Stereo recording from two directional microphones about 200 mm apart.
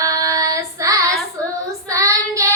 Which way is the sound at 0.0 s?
15° right (ahead or behind).